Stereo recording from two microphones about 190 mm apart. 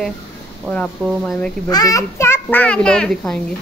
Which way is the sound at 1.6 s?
20° left (ahead or behind).